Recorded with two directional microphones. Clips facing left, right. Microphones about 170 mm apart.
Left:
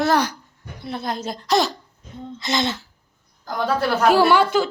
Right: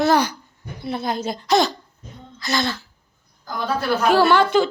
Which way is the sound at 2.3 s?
20° left (ahead or behind).